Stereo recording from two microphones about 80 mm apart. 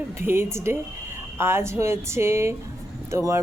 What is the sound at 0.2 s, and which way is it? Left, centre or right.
Speech, right.